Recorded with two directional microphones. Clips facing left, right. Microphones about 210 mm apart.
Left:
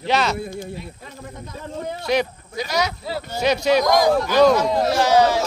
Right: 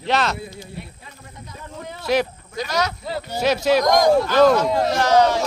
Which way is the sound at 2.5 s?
10° left (ahead or behind).